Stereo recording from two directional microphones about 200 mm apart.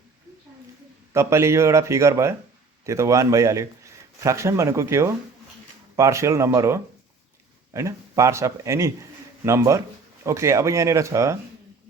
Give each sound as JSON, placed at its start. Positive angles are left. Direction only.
{"t": 1.1, "sound": "a man's voice", "side_deg": -15}